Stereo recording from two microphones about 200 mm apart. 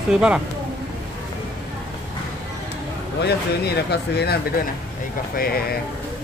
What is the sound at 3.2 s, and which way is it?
Speech, 55° left (ahead or behind).